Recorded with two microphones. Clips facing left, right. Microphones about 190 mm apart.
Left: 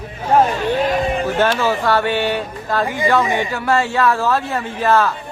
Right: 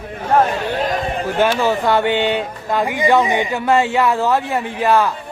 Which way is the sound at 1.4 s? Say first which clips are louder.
Right 3 dB; 15° right (ahead or behind).